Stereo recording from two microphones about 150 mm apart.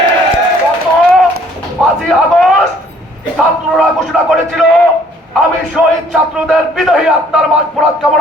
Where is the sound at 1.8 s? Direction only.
Centre (ahead or behind).